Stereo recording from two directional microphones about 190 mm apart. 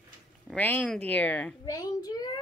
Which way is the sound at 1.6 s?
20° left (ahead or behind).